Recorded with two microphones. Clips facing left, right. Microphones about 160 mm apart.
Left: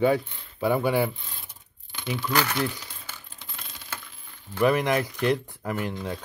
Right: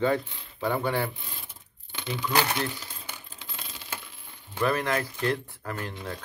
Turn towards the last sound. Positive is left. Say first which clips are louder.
# left 5 dB
turn(degrees=15)  # may be behind; listen again after turning